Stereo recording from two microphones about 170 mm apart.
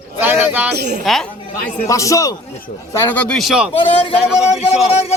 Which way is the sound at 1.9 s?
20° left (ahead or behind).